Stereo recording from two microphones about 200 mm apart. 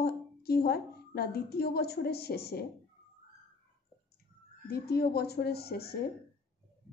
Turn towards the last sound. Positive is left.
turn(degrees=50)  # may be behind; listen again after turning